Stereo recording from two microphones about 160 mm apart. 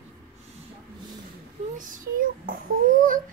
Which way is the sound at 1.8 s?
60° right (ahead or behind).